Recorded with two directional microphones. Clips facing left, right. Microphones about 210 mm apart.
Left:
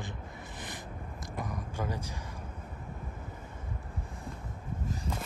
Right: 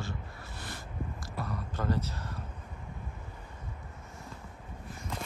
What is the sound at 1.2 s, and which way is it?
Speech, 15° left (ahead or behind).